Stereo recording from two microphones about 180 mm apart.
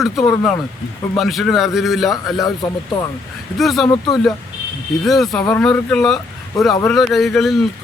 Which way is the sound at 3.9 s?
20° left (ahead or behind).